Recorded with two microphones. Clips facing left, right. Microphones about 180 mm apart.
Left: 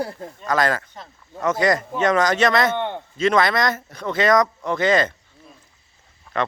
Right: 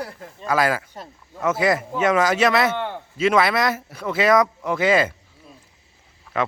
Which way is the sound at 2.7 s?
20° left (ahead or behind).